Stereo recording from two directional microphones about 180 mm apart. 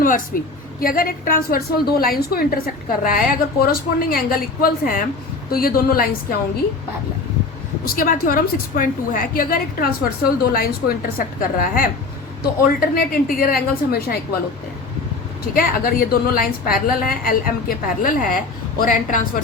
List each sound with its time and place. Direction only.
0.3 s a woman's voice: 55° left (ahead or behind)
7.9 s a woman's voice: 50° left (ahead or behind)
15.5 s a woman's voice: 55° left (ahead or behind)